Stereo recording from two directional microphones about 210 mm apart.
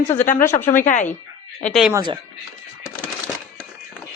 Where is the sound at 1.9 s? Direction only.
20° right (ahead or behind).